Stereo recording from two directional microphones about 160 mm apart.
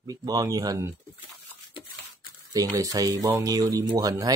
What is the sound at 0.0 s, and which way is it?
Speech, 25° right (ahead or behind).